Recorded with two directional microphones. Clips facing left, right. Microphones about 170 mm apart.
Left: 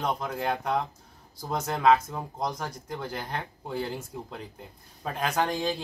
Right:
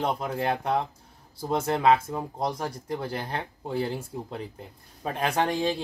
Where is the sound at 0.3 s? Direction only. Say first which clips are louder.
Right 2 dB; 30° right (ahead or behind).